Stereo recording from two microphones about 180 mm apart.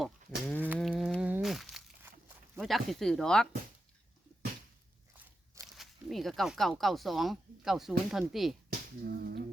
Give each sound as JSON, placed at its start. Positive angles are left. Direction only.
{"t": 0.0, "sound": "livestock", "side_deg": 5}
{"t": 0.8, "sound": "a sound", "side_deg": 0}
{"t": 2.6, "sound": "speech", "side_deg": 0}
{"t": 5.1, "sound": "speech", "side_deg": -10}
{"t": 9.0, "sound": "speech", "side_deg": -60}